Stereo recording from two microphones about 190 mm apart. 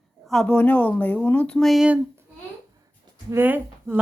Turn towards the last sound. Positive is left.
turn(degrees=-10)  # may be behind; listen again after turning